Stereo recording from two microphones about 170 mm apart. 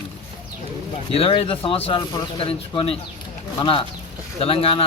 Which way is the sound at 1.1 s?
35° left (ahead or behind).